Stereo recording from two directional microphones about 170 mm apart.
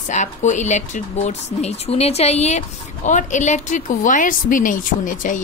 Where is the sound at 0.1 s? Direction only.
45° left (ahead or behind).